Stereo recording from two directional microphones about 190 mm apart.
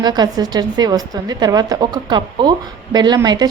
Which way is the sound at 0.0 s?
20° right (ahead or behind).